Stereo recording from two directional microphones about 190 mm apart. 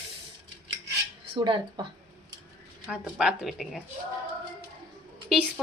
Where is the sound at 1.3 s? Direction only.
25° right (ahead or behind).